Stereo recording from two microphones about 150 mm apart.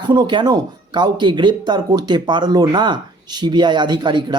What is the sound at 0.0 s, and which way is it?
Speech, 30° right (ahead or behind).